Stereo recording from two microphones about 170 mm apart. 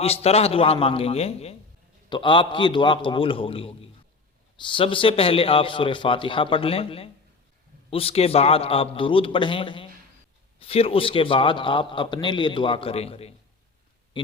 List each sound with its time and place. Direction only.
0.0 s a man's voice: 35° left (ahead or behind)